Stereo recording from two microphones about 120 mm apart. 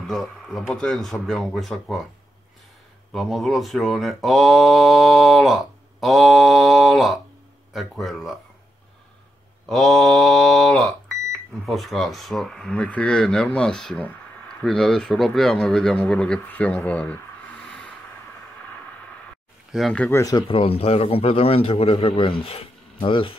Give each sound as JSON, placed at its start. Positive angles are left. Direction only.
{"t": 0.0, "sound": "speech", "side_deg": 5}
{"t": 3.1, "sound": "speech", "side_deg": 0}
{"t": 9.7, "sound": "a man's voice", "side_deg": 5}
{"t": 19.9, "sound": "speech", "side_deg": 10}
{"t": 20.2, "sound": "speech", "side_deg": 30}
{"t": 20.4, "sound": "a man's voice", "side_deg": 50}